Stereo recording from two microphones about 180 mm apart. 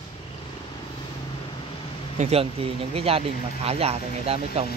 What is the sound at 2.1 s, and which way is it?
Speech, 35° right (ahead or behind).